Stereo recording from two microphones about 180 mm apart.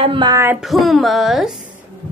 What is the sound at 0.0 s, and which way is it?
Speech, 25° right (ahead or behind).